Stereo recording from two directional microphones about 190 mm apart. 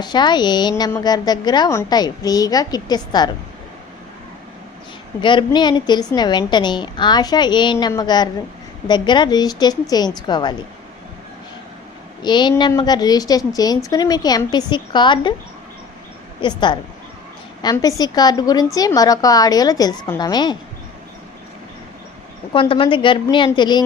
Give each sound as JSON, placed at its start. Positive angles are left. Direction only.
{"t": 0.0, "sound": "a woman's voice", "side_deg": 20}
{"t": 5.2, "sound": "a woman's voice", "side_deg": 25}
{"t": 12.2, "sound": "a woman's voice", "side_deg": 25}
{"t": 16.4, "sound": "a woman's voice", "side_deg": 25}
{"t": 22.5, "sound": "a woman's voice", "side_deg": 25}